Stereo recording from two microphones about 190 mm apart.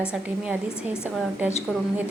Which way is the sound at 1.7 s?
Centre (ahead or behind).